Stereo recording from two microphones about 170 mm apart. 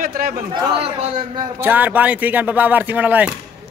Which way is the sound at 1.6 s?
10° right (ahead or behind).